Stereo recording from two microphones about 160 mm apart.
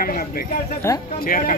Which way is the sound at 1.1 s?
60° left (ahead or behind).